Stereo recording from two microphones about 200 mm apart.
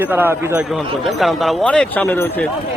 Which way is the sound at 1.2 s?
Centre (ahead or behind).